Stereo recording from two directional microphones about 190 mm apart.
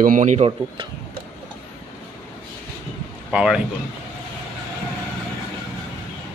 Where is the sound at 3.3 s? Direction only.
5° right (ahead or behind).